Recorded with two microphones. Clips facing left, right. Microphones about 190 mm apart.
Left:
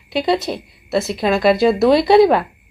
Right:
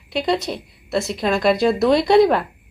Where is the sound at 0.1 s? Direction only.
Centre (ahead or behind).